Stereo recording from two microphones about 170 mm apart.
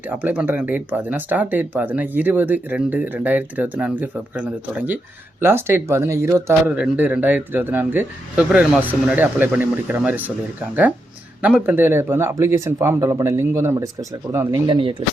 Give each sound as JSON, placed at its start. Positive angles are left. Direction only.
{"t": 0.2, "sound": "speech", "side_deg": -10}
{"t": 11.4, "sound": "speech", "side_deg": -10}
{"t": 14.7, "sound": "speech", "side_deg": -30}